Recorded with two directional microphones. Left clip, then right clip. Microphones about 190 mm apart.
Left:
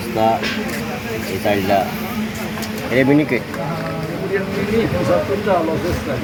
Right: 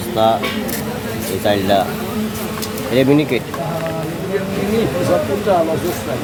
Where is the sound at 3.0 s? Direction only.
10° right (ahead or behind).